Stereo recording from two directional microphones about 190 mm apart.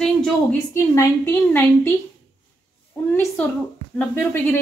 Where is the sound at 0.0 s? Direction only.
5° left (ahead or behind).